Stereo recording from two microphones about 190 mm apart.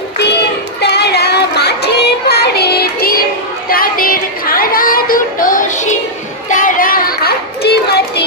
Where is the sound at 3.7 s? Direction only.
50° left (ahead or behind).